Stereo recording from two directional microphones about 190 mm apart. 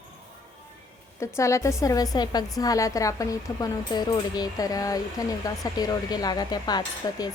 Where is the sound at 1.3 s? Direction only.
15° left (ahead or behind).